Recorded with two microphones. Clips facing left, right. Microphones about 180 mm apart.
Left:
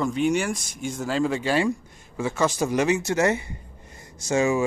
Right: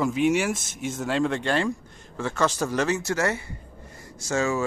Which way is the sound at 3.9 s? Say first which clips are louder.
Left 3 dB; 20° left (ahead or behind).